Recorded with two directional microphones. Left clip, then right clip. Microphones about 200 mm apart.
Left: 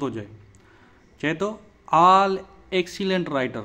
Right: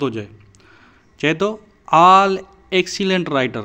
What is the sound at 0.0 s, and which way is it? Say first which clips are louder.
A man's voice: right 7 dB; 20° right (ahead or behind).